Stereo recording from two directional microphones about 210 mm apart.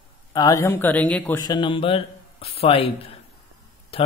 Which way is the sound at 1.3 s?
20° left (ahead or behind).